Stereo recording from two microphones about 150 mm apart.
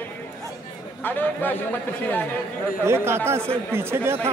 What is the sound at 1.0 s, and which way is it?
Speech, 10° left (ahead or behind).